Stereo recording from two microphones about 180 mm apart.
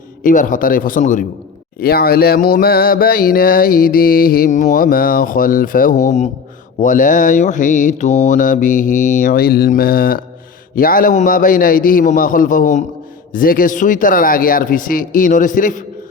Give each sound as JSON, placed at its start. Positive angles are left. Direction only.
{"t": 0.2, "sound": "mantra", "side_deg": 50}
{"t": 1.8, "sound": "mantra", "side_deg": 60}